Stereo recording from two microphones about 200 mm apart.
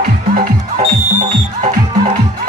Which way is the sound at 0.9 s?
40° right (ahead or behind).